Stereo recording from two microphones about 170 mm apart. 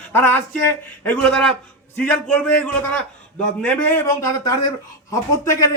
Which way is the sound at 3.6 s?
10° left (ahead or behind).